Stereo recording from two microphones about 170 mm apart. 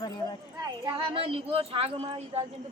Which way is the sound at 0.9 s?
30° right (ahead or behind).